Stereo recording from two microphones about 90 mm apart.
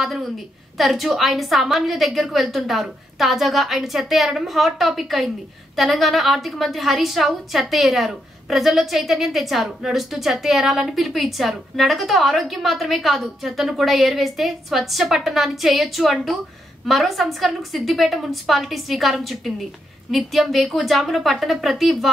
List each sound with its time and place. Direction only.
0.0 s a woman's voice: centre (ahead or behind)